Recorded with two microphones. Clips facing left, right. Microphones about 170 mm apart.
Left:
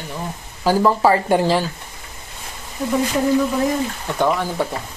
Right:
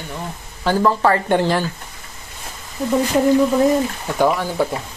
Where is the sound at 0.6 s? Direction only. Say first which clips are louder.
Left 1 dB; 10° left (ahead or behind).